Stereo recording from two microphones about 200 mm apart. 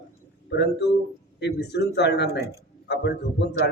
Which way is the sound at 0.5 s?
60° left (ahead or behind).